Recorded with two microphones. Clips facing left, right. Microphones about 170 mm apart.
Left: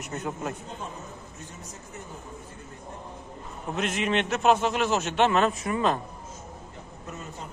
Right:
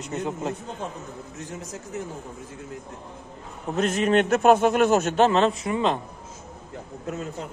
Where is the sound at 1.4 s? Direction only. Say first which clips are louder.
Right 7 dB; 90° right.